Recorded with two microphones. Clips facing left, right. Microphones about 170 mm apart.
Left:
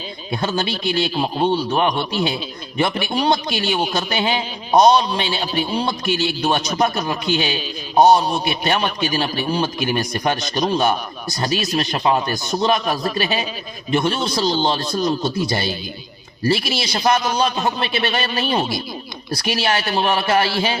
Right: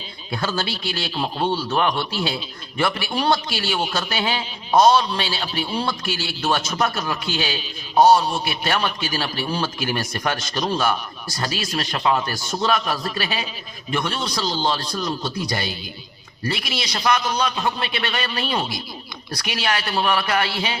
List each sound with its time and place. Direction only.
0.3 s a man's voice: 20° left (ahead or behind)
14.8 s speech: 40° left (ahead or behind)
15.2 s a man's voice: 25° left (ahead or behind)